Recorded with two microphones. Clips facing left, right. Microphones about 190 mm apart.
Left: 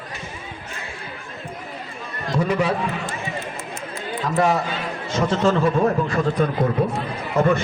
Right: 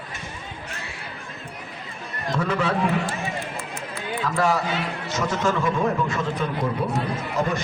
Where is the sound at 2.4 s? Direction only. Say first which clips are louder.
Left 4 dB; 10° left (ahead or behind).